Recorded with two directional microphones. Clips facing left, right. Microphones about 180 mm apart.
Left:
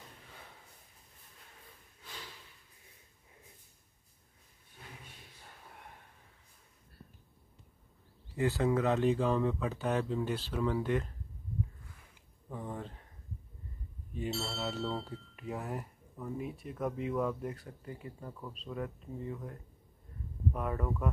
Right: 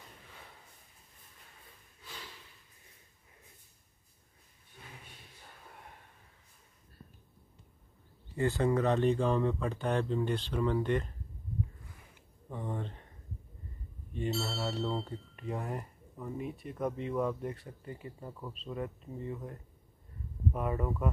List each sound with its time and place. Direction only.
8.4 s speech: centre (ahead or behind)
12.4 s a sound: centre (ahead or behind)
14.1 s chink: 5° left (ahead or behind)
14.6 s a sound: 5° left (ahead or behind)
15.0 s speech: 5° left (ahead or behind)
20.5 s speech: 5° right (ahead or behind)